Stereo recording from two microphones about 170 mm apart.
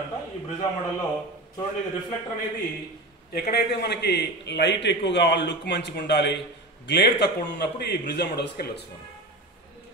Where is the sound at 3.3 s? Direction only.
70° left (ahead or behind).